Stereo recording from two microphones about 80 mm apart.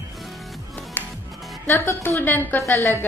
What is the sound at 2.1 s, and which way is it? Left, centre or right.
Speech, left.